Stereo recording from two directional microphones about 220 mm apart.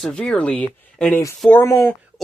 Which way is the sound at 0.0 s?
5° left (ahead or behind).